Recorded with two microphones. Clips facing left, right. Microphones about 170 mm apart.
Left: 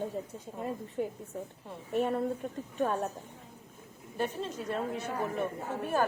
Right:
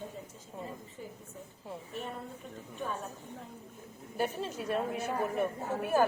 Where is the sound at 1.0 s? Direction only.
70° left (ahead or behind).